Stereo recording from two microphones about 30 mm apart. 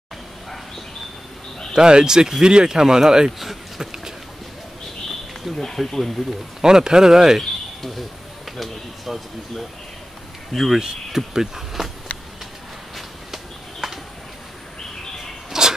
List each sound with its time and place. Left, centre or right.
1.8 s speech: right
3.3 s speech: centre
5.5 s speech: centre
6.6 s speech: right
8.5 s speech: centre
12.9 s walk: centre
15.0 s a sound: centre
15.5 s a sound: centre